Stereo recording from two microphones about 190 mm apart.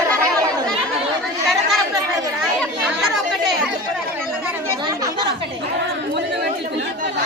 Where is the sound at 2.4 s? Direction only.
5° right (ahead or behind).